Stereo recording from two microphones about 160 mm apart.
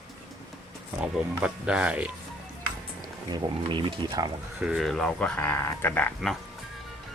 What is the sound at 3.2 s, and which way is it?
Speech, 30° right (ahead or behind).